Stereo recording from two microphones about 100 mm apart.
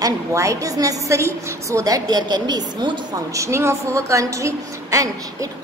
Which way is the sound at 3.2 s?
30° right (ahead or behind).